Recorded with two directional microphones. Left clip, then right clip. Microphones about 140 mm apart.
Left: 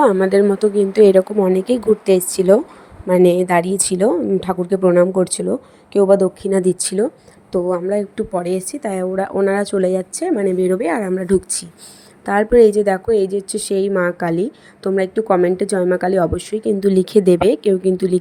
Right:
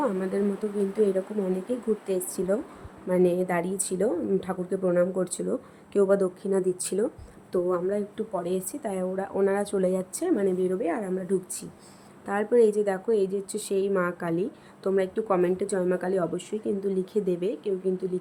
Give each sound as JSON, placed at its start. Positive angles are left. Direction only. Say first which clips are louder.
{"t": 0.0, "sound": "a woman's voice", "louder": "left 14 dB", "side_deg": 90}
{"t": 5.5, "sound": "speech", "louder": "left 9 dB", "side_deg": 30}
{"t": 6.5, "sound": "a woman's voice", "louder": "left 9 dB", "side_deg": 45}
{"t": 7.7, "sound": "a woman's voice", "louder": "left 8 dB", "side_deg": 45}
{"t": 10.6, "sound": "speech", "louder": "left 10 dB", "side_deg": 90}
{"t": 11.1, "sound": "a woman's voice", "louder": "left 11 dB", "side_deg": 60}